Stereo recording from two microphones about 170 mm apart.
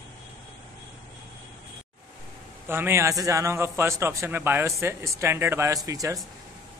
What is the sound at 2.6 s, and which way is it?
A man's voice, 15° right (ahead or behind).